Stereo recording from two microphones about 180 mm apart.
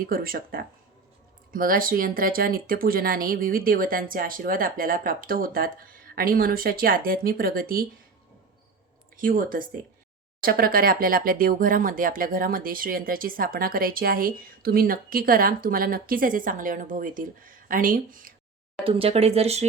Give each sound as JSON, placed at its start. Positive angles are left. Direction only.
{"t": 0.0, "sound": "speech", "side_deg": -55}
{"t": 9.1, "sound": "speech", "side_deg": -50}
{"t": 18.9, "sound": "speech", "side_deg": -35}